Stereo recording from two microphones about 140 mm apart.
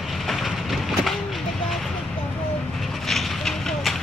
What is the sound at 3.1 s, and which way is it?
Vehicle, centre (ahead or behind).